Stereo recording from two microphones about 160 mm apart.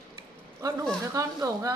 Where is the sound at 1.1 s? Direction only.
20° right (ahead or behind).